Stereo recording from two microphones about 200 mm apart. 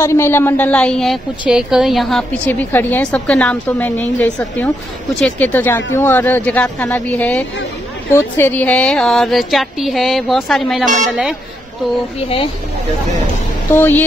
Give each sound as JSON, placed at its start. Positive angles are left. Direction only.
{"t": 0.0, "sound": "a woman's voice", "side_deg": 10}
{"t": 13.7, "sound": "a woman's voice", "side_deg": 10}